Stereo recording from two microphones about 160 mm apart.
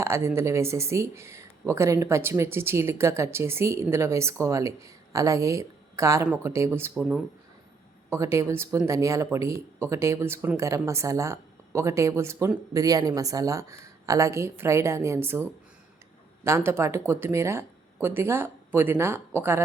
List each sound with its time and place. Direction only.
0.0 s speech: 15° right (ahead or behind)
8.1 s speech: 20° right (ahead or behind)